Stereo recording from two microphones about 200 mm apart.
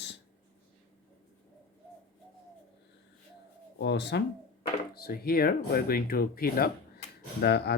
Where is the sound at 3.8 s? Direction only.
60° left (ahead or behind).